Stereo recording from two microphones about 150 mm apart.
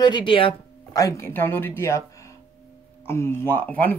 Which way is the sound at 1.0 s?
20° left (ahead or behind).